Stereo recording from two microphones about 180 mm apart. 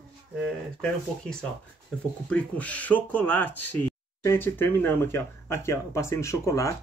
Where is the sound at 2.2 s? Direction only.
5° left (ahead or behind).